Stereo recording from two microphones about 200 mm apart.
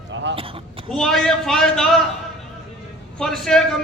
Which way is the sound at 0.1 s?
60° right (ahead or behind).